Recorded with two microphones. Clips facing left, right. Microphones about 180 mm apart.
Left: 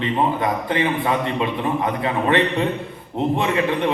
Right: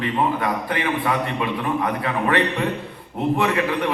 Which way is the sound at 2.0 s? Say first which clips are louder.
Left 4 dB; 25° left (ahead or behind).